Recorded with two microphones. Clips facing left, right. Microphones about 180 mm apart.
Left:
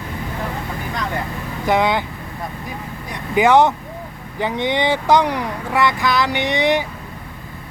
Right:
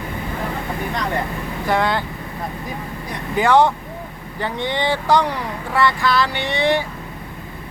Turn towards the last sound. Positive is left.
turn(degrees=20)  # may be behind; listen again after turning